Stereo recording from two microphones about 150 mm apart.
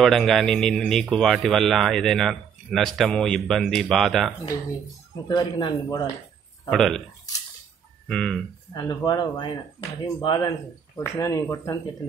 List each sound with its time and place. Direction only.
0.0 s speech: centre (ahead or behind)
5.3 s speech: 30° left (ahead or behind)
6.7 s speech: centre (ahead or behind)
8.1 s speech: 5° left (ahead or behind)
8.7 s speech: 25° left (ahead or behind)